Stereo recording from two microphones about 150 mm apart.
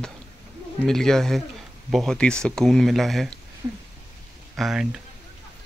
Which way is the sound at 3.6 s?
25° right (ahead or behind).